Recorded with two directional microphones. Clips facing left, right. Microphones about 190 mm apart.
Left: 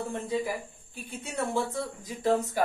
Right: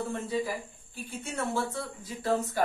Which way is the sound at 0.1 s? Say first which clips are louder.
Left 1 dB; 20° left (ahead or behind).